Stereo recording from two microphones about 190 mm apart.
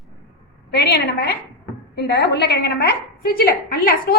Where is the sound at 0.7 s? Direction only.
60° left (ahead or behind).